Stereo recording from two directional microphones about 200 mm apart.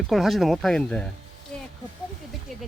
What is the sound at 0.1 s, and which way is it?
Speech, centre (ahead or behind).